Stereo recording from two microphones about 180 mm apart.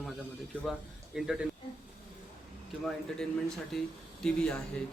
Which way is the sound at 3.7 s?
Centre (ahead or behind).